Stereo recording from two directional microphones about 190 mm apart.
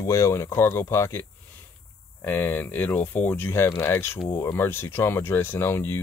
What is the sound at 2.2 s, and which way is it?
Speech, 10° left (ahead or behind).